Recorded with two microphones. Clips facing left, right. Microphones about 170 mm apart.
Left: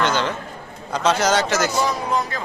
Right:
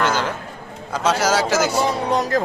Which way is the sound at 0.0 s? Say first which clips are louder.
Even; 5° right (ahead or behind).